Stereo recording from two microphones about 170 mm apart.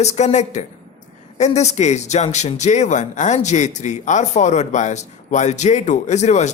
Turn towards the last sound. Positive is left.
turn(degrees=40)  # may be behind; listen again after turning